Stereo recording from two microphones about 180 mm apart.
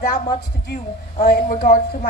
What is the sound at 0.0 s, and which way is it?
A woman's voice, 55° left (ahead or behind).